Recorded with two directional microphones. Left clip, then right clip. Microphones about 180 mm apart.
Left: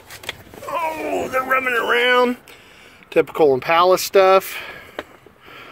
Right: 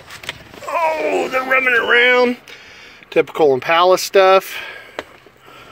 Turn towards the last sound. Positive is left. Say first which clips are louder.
# right 2 dB
turn(degrees=-5)  # may be behind; listen again after turning